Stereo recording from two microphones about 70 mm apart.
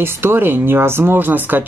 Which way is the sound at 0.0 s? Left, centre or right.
Right.